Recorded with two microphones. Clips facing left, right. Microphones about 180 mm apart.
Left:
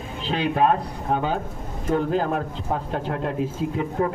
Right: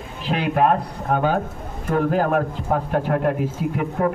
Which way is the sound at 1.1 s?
65° right (ahead or behind).